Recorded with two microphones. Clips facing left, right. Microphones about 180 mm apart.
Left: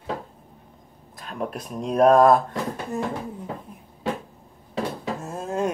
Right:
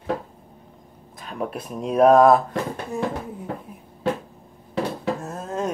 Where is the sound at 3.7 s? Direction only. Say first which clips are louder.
Right 2 dB; 5° right (ahead or behind).